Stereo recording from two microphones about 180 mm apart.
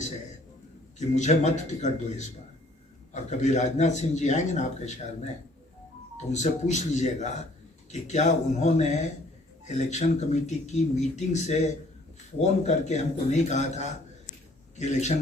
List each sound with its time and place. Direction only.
0.9 s speech: 40° left (ahead or behind)
6.3 s speech: 40° left (ahead or behind)